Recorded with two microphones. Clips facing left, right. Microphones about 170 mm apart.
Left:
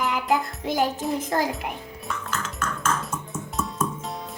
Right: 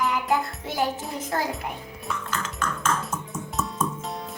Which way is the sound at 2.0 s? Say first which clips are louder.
Even; 5° left (ahead or behind).